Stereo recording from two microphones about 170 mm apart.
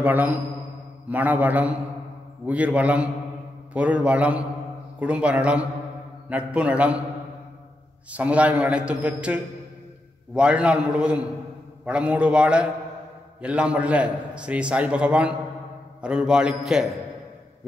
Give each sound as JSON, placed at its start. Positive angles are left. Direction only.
{"t": 0.0, "sound": "a man's voice", "side_deg": -10}
{"t": 8.1, "sound": "a man's voice", "side_deg": -10}